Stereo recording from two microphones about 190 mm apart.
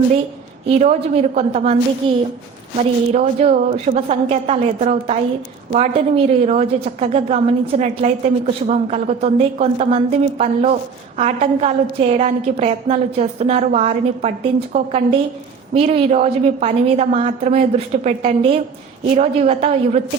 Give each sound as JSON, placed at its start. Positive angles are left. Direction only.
{"t": 0.7, "sound": "a woman's voice", "side_deg": -35}
{"t": 3.1, "sound": "a woman's voice", "side_deg": -35}